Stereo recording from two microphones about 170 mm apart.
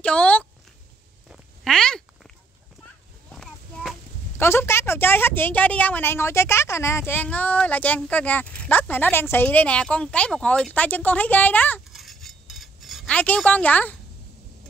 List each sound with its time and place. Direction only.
0.0 s a sound: 10° left (ahead or behind)
4.4 s a woman's voice: 15° left (ahead or behind)
11.9 s cutlery: centre (ahead or behind)